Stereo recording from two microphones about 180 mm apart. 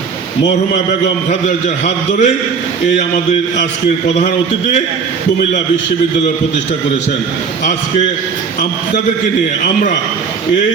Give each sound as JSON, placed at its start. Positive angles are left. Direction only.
{"t": 1.3, "sound": "a man's voice", "side_deg": 40}